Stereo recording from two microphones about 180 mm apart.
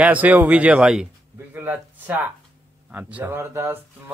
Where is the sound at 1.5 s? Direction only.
10° right (ahead or behind).